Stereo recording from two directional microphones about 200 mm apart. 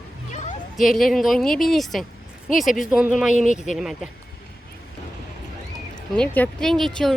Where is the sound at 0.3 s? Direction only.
35° left (ahead or behind).